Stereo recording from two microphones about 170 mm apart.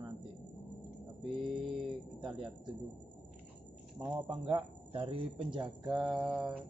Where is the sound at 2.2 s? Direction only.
25° right (ahead or behind).